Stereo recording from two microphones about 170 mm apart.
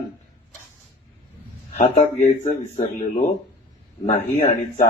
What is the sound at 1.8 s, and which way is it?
Speech, 40° left (ahead or behind).